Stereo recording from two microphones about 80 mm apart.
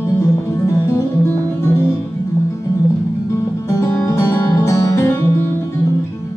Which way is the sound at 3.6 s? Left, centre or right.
Left.